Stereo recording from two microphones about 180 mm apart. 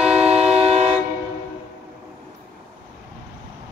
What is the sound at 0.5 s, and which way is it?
Vehicle, 35° right (ahead or behind).